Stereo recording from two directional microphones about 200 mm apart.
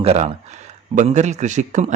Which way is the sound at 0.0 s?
30° right (ahead or behind).